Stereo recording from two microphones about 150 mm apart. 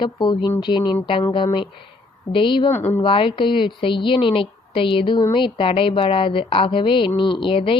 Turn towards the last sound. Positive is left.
turn(degrees=35)  # may be behind; listen again after turning